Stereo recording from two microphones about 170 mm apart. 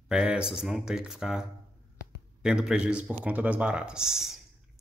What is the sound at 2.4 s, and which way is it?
Speech, 5° right (ahead or behind).